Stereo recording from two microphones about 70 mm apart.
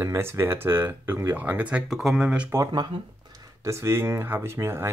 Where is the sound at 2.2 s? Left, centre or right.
Centre.